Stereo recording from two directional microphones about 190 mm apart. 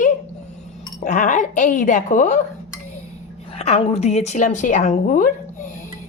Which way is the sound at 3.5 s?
35° left (ahead or behind).